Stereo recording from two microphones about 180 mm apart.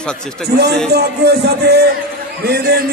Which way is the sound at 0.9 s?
65° right (ahead or behind).